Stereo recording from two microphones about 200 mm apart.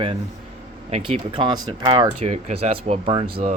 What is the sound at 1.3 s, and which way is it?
Speech, 25° right (ahead or behind).